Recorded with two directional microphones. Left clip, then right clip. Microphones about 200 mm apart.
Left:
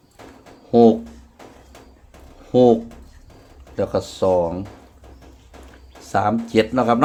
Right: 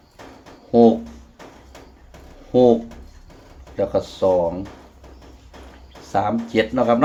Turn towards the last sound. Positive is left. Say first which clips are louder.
# even
turn(degrees=45)  # may be behind; listen again after turning